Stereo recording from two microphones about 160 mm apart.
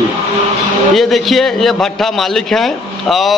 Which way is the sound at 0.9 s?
Centre (ahead or behind).